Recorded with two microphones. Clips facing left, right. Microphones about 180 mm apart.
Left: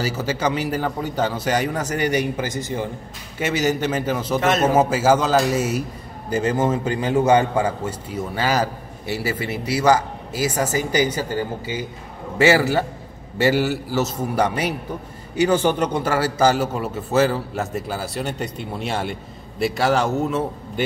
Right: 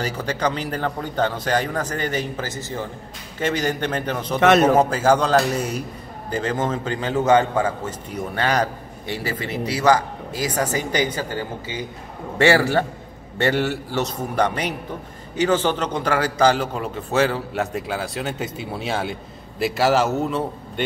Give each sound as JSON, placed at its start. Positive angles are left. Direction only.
{"t": 0.0, "sound": "a man's voice", "side_deg": 5}
{"t": 4.4, "sound": "a man's voice", "side_deg": -70}
{"t": 4.7, "sound": "a man's voice", "side_deg": 5}
{"t": 12.4, "sound": "a man's voice", "side_deg": 5}